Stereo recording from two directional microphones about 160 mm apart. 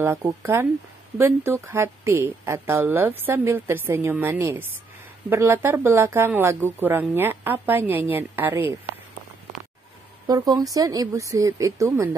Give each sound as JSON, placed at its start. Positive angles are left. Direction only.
{"t": 0.0, "sound": "a woman's voice", "side_deg": -15}
{"t": 10.2, "sound": "speech", "side_deg": -25}